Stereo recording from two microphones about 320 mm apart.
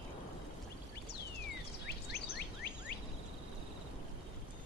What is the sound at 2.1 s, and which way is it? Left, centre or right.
Bird, left.